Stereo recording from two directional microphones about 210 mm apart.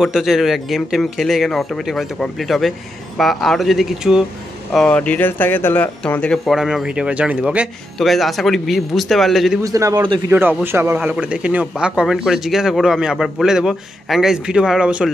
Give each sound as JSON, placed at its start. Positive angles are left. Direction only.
{"t": 0.0, "sound": "speech", "side_deg": 0}
{"t": 9.6, "sound": "a man's voice", "side_deg": -15}